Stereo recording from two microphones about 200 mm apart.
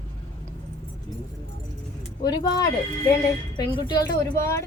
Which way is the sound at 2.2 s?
20° left (ahead or behind).